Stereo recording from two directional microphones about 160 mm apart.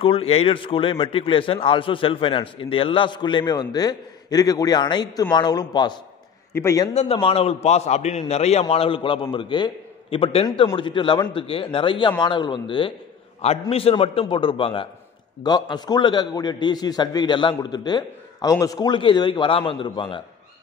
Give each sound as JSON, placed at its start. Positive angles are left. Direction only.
{"t": 0.0, "sound": "a man's voice", "side_deg": 35}
{"t": 6.9, "sound": "a man's voice", "side_deg": 40}